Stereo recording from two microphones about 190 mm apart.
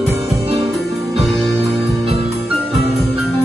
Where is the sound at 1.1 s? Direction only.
30° right (ahead or behind).